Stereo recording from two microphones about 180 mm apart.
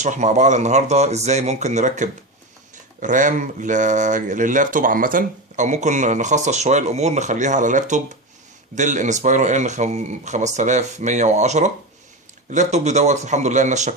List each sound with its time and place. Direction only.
0.0 s speech: 40° right (ahead or behind)